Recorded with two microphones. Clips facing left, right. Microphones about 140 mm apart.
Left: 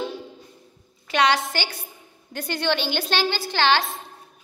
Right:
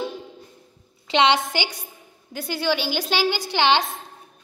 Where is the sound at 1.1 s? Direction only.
20° right (ahead or behind).